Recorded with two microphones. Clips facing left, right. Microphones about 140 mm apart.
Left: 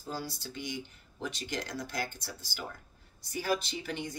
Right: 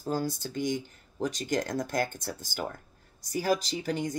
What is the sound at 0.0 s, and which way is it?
Speech, 50° right (ahead or behind).